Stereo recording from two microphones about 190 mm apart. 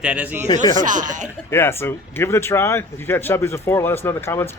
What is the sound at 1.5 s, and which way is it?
Speech, 10° left (ahead or behind).